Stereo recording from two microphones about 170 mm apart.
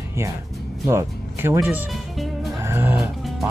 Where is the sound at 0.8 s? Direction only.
15° right (ahead or behind).